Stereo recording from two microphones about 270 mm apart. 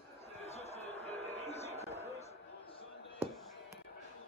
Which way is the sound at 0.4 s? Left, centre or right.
Left.